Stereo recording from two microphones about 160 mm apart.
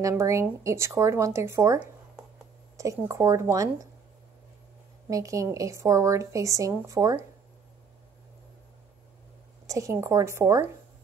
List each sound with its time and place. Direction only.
0.0 s a woman's voice: 20° right (ahead or behind)
5.1 s a woman's voice: 20° right (ahead or behind)
9.7 s speech: 20° right (ahead or behind)